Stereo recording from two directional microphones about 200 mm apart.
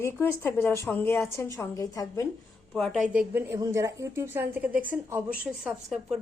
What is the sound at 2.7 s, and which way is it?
Speech, centre (ahead or behind).